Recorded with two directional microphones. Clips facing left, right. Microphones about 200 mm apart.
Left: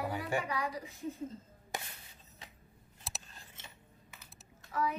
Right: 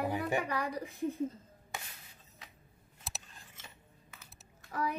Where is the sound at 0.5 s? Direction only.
55° right (ahead or behind).